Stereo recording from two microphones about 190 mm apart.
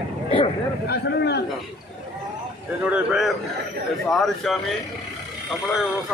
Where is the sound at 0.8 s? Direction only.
60° left (ahead or behind).